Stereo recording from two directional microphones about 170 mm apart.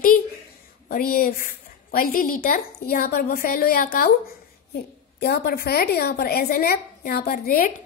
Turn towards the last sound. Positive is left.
turn(degrees=60)  # may be behind; listen again after turning